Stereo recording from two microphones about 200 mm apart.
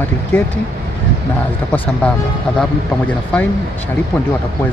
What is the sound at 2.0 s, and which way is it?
Speech, 5° left (ahead or behind).